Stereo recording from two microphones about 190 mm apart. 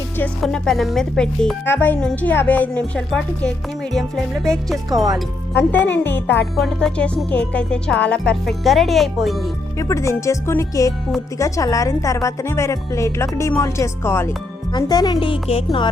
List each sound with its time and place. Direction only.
0.2 s speech: 5° left (ahead or behind)
9.7 s speech: 15° left (ahead or behind)